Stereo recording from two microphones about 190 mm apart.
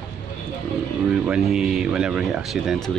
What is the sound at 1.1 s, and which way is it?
Speech, 5° right (ahead or behind).